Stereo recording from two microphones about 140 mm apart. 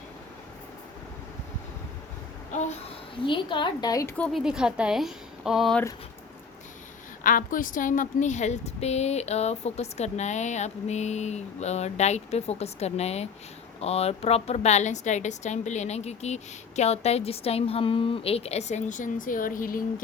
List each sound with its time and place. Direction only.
2.5 s babbling: 55° left (ahead or behind)
3.2 s a woman's voice: 35° left (ahead or behind)
4.2 s a woman's voice: centre (ahead or behind)
7.3 s a woman's voice: 75° left (ahead or behind)